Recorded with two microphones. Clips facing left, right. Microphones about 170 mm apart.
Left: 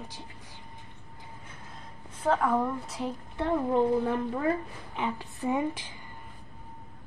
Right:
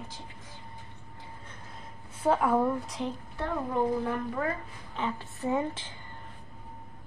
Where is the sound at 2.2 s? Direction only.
10° right (ahead or behind).